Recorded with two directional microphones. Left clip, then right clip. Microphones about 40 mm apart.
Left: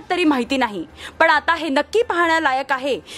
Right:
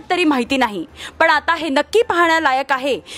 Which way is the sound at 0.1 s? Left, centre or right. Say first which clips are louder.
Right 2 dB; right.